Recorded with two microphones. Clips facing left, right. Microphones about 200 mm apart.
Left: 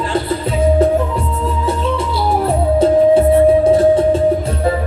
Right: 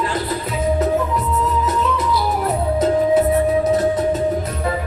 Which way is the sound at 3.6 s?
30° left (ahead or behind).